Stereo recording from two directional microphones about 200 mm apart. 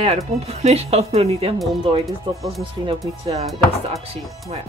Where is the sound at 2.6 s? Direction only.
25° right (ahead or behind).